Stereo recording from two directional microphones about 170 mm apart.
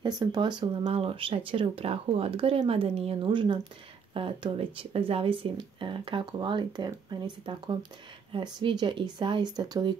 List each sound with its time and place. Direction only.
0.0 s speech: 25° right (ahead or behind)